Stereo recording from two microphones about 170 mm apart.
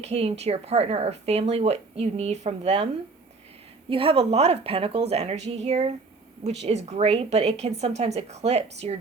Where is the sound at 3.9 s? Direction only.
35° right (ahead or behind).